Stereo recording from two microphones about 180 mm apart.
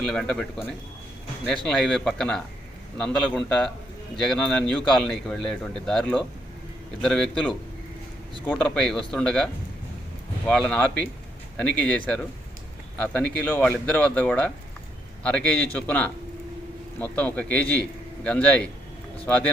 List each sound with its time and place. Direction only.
0.0 s speech: centre (ahead or behind)
8.5 s a man's voice: 5° left (ahead or behind)